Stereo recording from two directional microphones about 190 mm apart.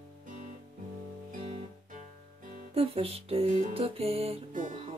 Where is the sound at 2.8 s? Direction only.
30° right (ahead or behind).